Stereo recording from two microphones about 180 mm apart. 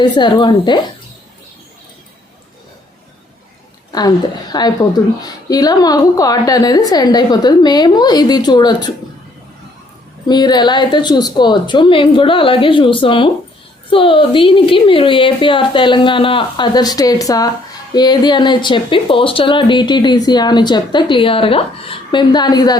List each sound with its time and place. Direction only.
0.0 s speech: 25° left (ahead or behind)
4.5 s speech: 20° left (ahead or behind)
10.2 s speech: 25° left (ahead or behind)